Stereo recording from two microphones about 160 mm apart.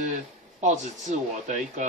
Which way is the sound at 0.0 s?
50° right (ahead or behind).